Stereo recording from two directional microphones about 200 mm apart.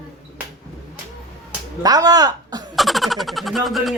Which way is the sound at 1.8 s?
20° right (ahead or behind).